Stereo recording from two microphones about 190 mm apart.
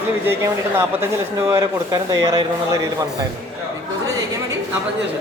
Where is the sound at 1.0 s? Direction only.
15° right (ahead or behind).